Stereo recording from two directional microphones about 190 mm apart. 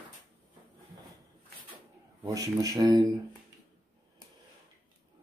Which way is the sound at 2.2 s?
15° right (ahead or behind).